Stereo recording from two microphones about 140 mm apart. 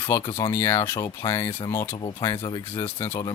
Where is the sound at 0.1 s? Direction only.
20° left (ahead or behind).